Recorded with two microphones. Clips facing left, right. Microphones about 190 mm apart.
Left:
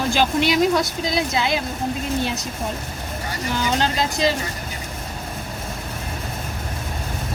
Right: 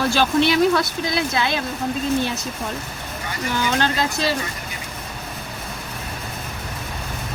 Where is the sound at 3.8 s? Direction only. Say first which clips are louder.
Left 1 dB; 15° left (ahead or behind).